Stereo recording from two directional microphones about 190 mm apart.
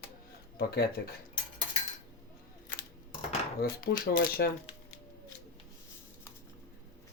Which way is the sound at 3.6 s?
50° left (ahead or behind).